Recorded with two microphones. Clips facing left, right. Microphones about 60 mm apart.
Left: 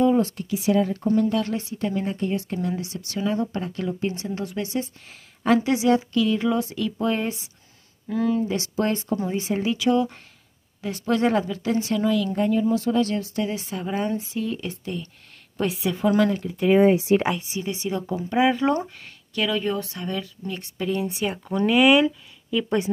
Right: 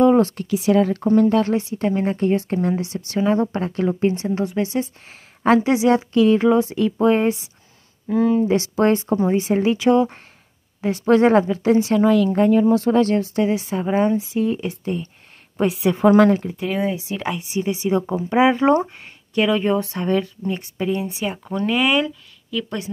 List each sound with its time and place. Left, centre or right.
0.0 s speech: right
1.0 s a woman's voice: right
8.5 s speech: right
12.0 s speech: right
13.6 s a woman's voice: right
16.0 s speech: right
16.8 s speech: left
17.4 s a woman's voice: centre
19.9 s speech: right
20.4 s a woman's voice: right
21.0 s speech: centre
22.5 s speech: centre